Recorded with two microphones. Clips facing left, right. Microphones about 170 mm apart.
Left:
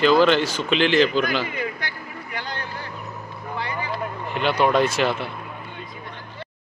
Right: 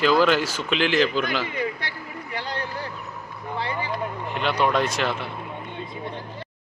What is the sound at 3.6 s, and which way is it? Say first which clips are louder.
Vehicle: right 1 dB; 30° right (ahead or behind).